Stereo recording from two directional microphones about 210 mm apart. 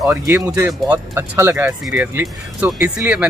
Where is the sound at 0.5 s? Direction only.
5° right (ahead or behind).